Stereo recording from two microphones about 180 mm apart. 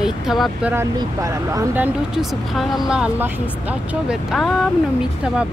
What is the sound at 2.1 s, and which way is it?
Speech, 5° right (ahead or behind).